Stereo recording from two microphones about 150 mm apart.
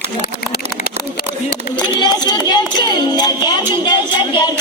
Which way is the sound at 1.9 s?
30° left (ahead or behind).